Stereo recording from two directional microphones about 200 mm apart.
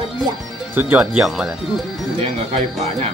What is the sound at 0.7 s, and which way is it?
Speech, 10° right (ahead or behind).